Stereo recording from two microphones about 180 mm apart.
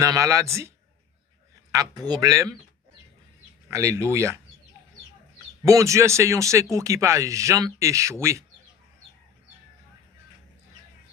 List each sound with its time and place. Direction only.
0.0 s speech: 15° right (ahead or behind)
1.7 s speech: 20° right (ahead or behind)
3.7 s speech: 15° right (ahead or behind)
5.6 s speech: 15° right (ahead or behind)